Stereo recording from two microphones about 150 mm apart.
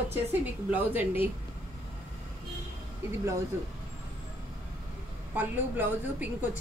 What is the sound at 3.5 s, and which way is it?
Speech, 15° right (ahead or behind).